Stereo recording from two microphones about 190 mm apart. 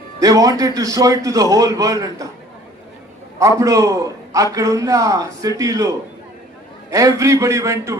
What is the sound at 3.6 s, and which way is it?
A man's voice, 15° right (ahead or behind).